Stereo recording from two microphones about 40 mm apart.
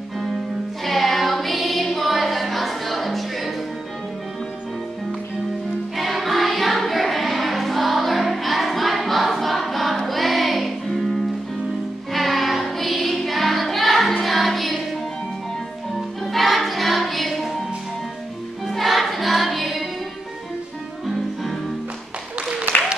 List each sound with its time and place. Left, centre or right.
0.8 s music: centre
5.9 s music: centre
16.3 s music: centre
18.7 s music: centre
22.5 s applause: right